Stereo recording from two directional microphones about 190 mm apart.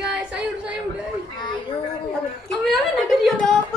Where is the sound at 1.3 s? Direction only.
25° left (ahead or behind).